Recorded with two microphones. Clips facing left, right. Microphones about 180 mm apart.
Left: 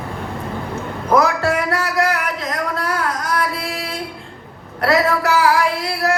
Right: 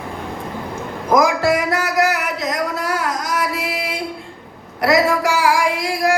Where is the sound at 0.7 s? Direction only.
10° right (ahead or behind).